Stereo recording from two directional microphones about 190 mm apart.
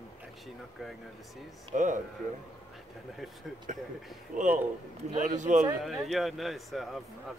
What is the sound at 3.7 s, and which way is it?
Speech, 40° right (ahead or behind).